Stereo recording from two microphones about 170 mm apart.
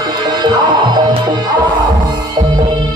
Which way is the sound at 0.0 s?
25° right (ahead or behind).